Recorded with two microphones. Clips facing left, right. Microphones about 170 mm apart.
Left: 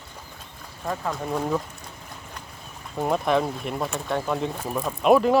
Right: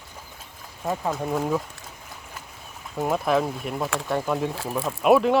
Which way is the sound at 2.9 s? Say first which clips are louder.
Even; centre (ahead or behind).